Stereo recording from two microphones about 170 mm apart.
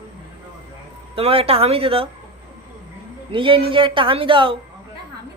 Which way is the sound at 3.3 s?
30° right (ahead or behind).